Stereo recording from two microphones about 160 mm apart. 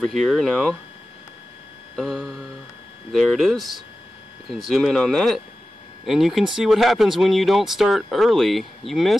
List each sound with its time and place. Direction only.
0.0 s speech: centre (ahead or behind)
2.0 s speech: centre (ahead or behind)